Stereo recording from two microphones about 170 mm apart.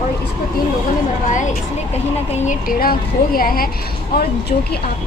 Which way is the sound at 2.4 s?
55° left (ahead or behind).